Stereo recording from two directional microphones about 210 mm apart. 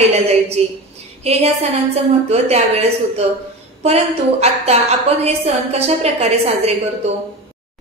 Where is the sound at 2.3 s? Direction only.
30° right (ahead or behind).